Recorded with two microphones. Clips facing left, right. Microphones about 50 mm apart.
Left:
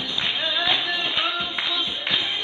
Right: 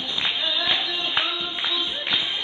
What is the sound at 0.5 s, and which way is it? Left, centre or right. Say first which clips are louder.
Music: left 2 dB; left.